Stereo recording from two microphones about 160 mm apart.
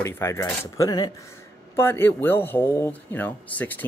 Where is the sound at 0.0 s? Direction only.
15° left (ahead or behind).